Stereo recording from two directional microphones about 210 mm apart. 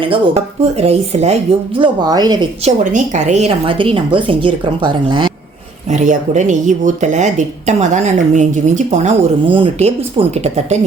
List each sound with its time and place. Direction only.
0.6 s speech: 30° right (ahead or behind)
1.8 s a woman's voice: 20° right (ahead or behind)
2.9 s a woman's voice: 35° right (ahead or behind)
5.9 s speech: 35° right (ahead or behind)